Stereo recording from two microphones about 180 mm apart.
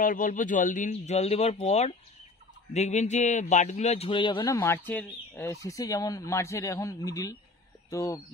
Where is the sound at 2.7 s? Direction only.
40° left (ahead or behind).